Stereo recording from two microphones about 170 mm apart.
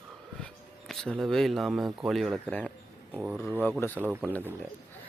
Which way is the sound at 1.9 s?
Centre (ahead or behind).